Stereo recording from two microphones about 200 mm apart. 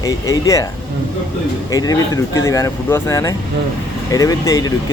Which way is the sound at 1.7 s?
20° left (ahead or behind).